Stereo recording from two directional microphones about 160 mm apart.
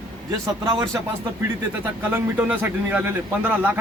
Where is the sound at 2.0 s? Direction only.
10° right (ahead or behind).